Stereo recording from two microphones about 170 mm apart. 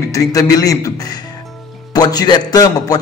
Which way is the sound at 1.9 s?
20° left (ahead or behind).